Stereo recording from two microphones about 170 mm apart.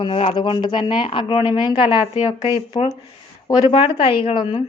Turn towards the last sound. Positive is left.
turn(degrees=30)  # may be behind; listen again after turning